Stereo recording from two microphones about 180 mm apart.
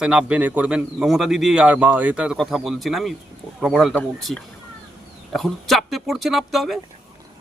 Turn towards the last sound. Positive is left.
turn(degrees=0)  # may be behind; listen again after turning